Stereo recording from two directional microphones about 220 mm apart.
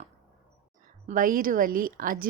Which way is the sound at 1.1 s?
40° right (ahead or behind).